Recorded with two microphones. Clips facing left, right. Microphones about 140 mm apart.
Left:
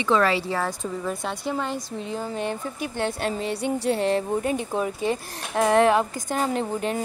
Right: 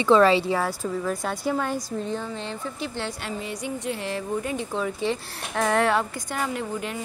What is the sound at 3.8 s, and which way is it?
Speech, 30° left (ahead or behind).